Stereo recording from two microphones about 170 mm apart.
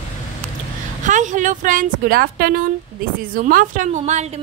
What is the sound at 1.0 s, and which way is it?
A woman's voice, 45° right (ahead or behind).